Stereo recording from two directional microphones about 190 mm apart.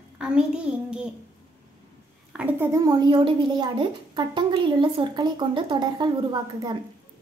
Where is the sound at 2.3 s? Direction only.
10° right (ahead or behind).